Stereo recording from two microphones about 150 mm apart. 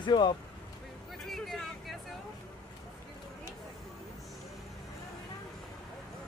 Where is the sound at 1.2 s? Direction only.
Centre (ahead or behind).